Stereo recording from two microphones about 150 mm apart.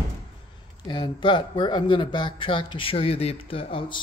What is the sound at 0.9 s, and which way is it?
Speech, 30° left (ahead or behind).